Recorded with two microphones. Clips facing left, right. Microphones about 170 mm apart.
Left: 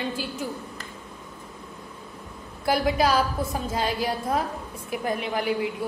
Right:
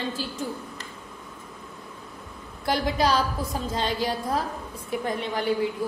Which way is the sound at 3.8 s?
30° right (ahead or behind).